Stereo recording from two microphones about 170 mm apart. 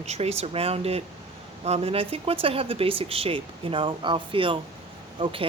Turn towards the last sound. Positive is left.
turn(degrees=-35)  # may be behind; listen again after turning